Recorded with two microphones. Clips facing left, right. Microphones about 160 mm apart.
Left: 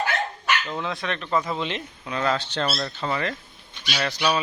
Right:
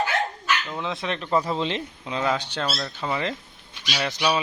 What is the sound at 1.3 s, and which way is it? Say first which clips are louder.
Speech: right 2 dB; 30° right (ahead or behind).